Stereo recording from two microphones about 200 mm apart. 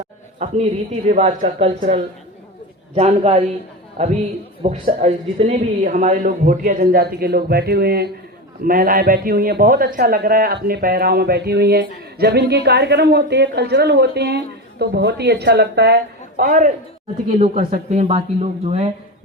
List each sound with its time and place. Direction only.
0.3 s a man's voice: 30° right (ahead or behind)
4.6 s a man's voice: 30° right (ahead or behind); by 16.0 s 55° right (ahead or behind)
16.4 s a man's voice: 40° right (ahead or behind)
17.2 s speech: 30° right (ahead or behind)